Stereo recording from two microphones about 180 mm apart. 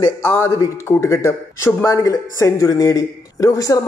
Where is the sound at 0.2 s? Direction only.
10° left (ahead or behind).